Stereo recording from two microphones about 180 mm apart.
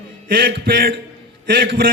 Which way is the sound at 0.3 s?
55° right (ahead or behind).